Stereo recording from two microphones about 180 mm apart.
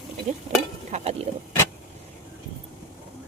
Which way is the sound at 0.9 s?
35° right (ahead or behind).